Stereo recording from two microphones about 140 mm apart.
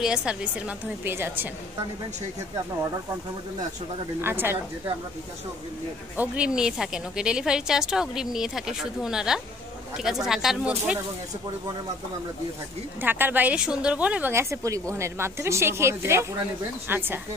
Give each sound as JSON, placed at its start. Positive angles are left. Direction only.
{"t": 0.0, "sound": "a woman's voice", "side_deg": -5}
{"t": 4.2, "sound": "a woman's voice", "side_deg": -15}
{"t": 6.1, "sound": "a woman's voice", "side_deg": -10}
{"t": 13.0, "sound": "a woman's voice", "side_deg": -15}